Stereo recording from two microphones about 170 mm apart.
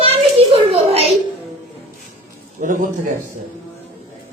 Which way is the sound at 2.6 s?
50° right (ahead or behind).